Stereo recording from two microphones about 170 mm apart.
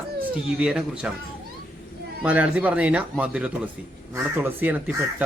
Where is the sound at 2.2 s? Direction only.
10° right (ahead or behind).